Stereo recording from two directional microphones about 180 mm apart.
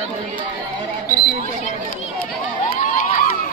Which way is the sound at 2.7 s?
50° left (ahead or behind).